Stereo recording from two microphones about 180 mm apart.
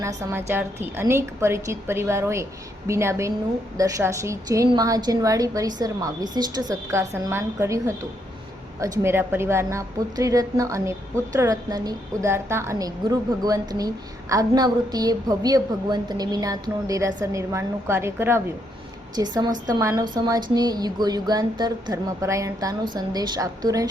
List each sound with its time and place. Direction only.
0.0 s a woman's voice: 15° right (ahead or behind)